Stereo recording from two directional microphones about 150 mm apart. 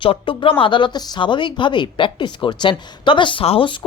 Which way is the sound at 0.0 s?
35° left (ahead or behind).